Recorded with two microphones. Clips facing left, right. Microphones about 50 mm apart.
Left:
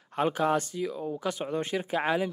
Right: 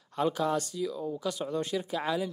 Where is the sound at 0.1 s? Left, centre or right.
Left.